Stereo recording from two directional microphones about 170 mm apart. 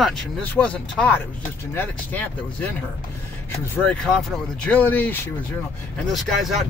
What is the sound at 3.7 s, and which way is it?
Speech, 5° left (ahead or behind).